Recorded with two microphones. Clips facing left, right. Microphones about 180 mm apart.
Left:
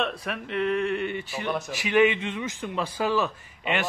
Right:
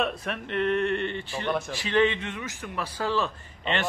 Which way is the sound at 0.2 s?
Centre (ahead or behind).